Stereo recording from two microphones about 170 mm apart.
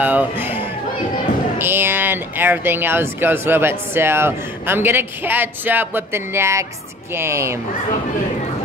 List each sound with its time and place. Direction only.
0.0 s speech: 10° right (ahead or behind)